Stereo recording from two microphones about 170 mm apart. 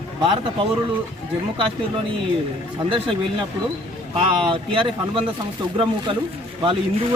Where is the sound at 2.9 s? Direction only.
30° right (ahead or behind).